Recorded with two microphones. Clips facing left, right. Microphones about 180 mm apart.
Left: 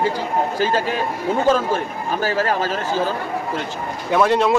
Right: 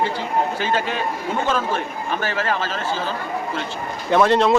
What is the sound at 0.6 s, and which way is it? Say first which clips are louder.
Speech: left 3 dB; 40° left (ahead or behind).